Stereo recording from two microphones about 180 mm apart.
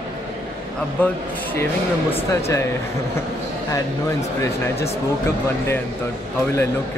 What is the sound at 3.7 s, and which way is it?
Speech, 15° left (ahead or behind).